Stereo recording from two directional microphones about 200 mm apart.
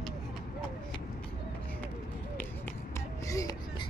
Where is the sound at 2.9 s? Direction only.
15° left (ahead or behind).